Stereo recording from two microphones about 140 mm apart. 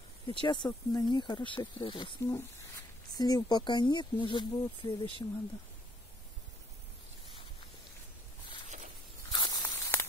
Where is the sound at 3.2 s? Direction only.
30° left (ahead or behind).